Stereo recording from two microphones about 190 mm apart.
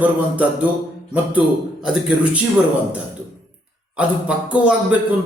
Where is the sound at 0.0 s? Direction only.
10° right (ahead or behind).